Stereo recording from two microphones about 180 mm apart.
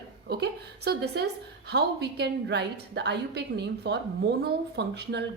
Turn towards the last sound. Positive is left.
turn(degrees=-70)  # may be behind; listen again after turning